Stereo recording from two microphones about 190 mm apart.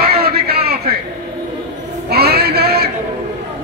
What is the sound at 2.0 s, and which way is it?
Music, 55° right (ahead or behind).